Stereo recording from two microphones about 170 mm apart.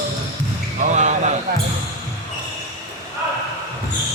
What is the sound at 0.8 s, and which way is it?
Basketball bounce, 45° right (ahead or behind).